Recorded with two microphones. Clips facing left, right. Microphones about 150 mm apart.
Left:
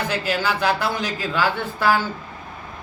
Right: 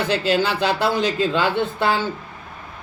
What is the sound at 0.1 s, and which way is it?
Speech, 25° right (ahead or behind).